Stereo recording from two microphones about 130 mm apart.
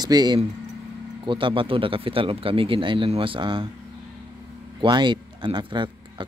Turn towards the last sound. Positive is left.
turn(degrees=-40)  # may be behind; listen again after turning